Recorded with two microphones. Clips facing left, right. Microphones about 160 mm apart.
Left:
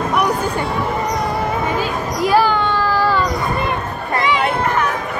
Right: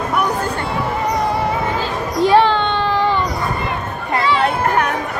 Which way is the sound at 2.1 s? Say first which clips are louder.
Right 3 dB; 30° right (ahead or behind).